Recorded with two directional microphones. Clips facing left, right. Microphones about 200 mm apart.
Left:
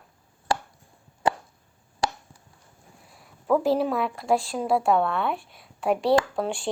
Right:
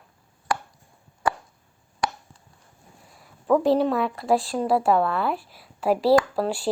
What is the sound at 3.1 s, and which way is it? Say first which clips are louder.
Speech: right 2 dB; centre (ahead or behind).